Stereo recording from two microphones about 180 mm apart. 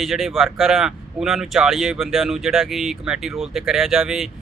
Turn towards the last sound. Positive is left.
turn(degrees=0)  # may be behind; listen again after turning